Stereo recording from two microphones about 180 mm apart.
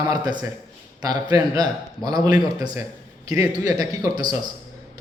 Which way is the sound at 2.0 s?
20° right (ahead or behind).